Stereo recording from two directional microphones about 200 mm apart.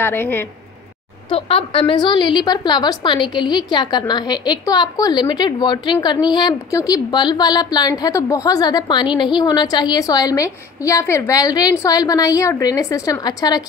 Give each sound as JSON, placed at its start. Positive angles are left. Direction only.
{"t": 0.0, "sound": "a woman's voice", "side_deg": 10}
{"t": 1.3, "sound": "a woman's voice", "side_deg": 30}